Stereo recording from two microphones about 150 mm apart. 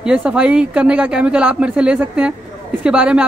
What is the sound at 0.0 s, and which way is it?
Speech, 5° right (ahead or behind).